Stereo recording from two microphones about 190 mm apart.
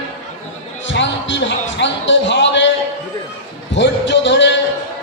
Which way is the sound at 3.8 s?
70° left (ahead or behind).